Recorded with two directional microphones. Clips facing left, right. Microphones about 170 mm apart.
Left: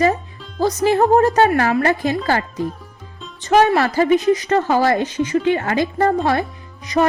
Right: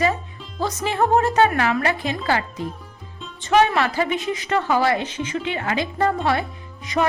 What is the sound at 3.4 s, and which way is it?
A woman's voice, 40° left (ahead or behind).